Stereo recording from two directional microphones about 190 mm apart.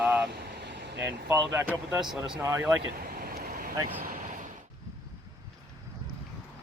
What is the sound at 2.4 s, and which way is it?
Speech, 15° right (ahead or behind).